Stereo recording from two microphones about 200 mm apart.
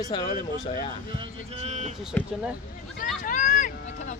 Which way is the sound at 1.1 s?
30° right (ahead or behind).